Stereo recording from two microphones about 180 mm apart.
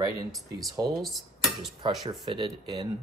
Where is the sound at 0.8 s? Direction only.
Centre (ahead or behind).